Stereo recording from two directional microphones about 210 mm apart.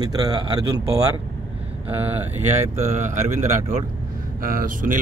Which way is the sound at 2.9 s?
35° right (ahead or behind).